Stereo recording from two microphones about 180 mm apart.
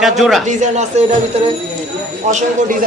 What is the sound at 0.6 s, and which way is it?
Speech, 40° right (ahead or behind).